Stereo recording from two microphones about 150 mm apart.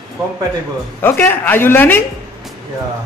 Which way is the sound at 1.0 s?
15° left (ahead or behind).